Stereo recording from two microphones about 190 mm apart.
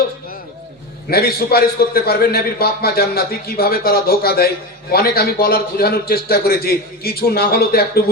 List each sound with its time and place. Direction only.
1.1 s a man's voice: 50° left (ahead or behind)